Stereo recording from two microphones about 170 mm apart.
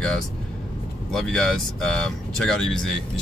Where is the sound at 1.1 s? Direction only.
Centre (ahead or behind).